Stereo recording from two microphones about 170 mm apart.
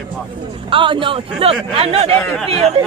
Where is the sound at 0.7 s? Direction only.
30° right (ahead or behind).